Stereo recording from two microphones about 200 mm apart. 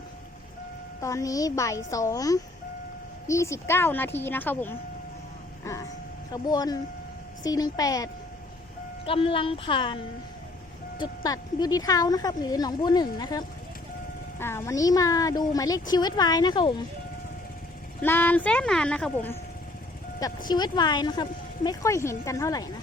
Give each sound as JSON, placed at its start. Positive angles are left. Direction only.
{"t": 1.0, "sound": "speech", "side_deg": 15}
{"t": 6.3, "sound": "speech", "side_deg": 20}
{"t": 11.0, "sound": "speech", "side_deg": 20}
{"t": 18.0, "sound": "speech", "side_deg": 10}
{"t": 20.5, "sound": "speech", "side_deg": 20}